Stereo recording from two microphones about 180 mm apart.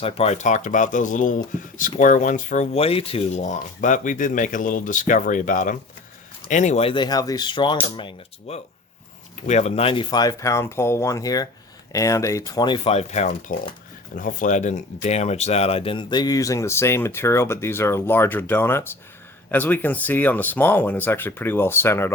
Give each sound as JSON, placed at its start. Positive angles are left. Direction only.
{"t": 0.0, "sound": "speech", "side_deg": 35}